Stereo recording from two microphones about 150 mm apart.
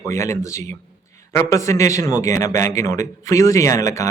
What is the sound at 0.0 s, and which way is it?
Speech, 20° left (ahead or behind).